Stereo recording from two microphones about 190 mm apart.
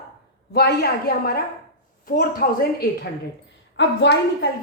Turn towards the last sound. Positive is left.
turn(degrees=65)  # may be behind; listen again after turning